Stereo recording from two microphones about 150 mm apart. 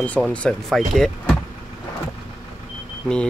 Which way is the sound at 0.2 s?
5° left (ahead or behind).